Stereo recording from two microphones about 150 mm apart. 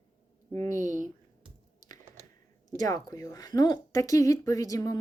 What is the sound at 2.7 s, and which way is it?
A woman's voice, 25° left (ahead or behind).